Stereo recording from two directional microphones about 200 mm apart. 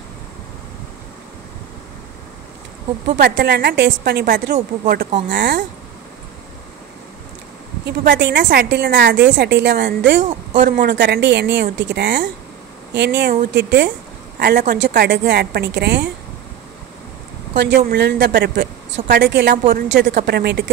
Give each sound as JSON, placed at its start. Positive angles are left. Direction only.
{"t": 3.1, "sound": "a woman's voice", "side_deg": -50}
{"t": 7.8, "sound": "speech", "side_deg": -45}
{"t": 8.2, "sound": "a woman's voice", "side_deg": -60}
{"t": 10.5, "sound": "speech", "side_deg": -40}
{"t": 10.8, "sound": "a woman's voice", "side_deg": -55}
{"t": 17.6, "sound": "a woman's voice", "side_deg": -60}